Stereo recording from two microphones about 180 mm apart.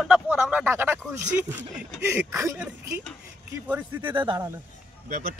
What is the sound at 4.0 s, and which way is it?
Speech, 25° right (ahead or behind).